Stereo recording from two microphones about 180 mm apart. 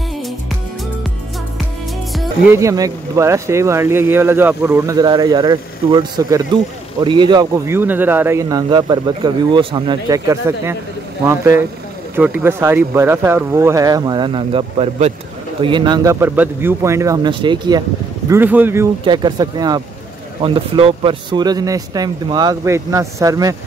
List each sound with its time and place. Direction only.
2.5 s speech: 20° right (ahead or behind)
18.3 s speech: 10° right (ahead or behind)
19.0 s speech: 25° right (ahead or behind)